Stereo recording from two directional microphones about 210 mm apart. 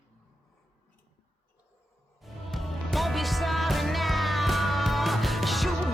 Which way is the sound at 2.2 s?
Centre (ahead or behind).